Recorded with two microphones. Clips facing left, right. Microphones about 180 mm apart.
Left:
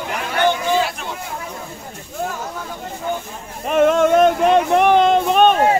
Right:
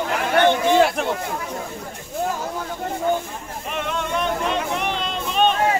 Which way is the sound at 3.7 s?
45° left (ahead or behind).